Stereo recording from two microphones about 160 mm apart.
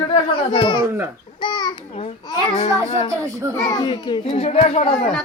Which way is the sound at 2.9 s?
30° left (ahead or behind).